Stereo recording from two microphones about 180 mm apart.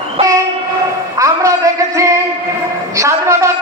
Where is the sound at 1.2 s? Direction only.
20° right (ahead or behind).